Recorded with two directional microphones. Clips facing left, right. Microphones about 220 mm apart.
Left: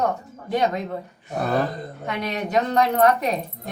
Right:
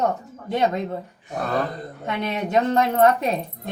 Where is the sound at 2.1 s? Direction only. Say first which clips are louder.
Right 2 dB; 25° right (ahead or behind).